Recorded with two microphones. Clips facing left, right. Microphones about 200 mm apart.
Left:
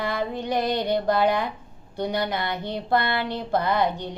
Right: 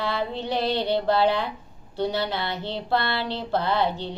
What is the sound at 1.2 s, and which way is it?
Speech, 15° left (ahead or behind).